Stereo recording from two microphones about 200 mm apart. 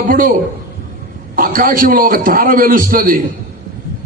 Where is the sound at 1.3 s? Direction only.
45° right (ahead or behind).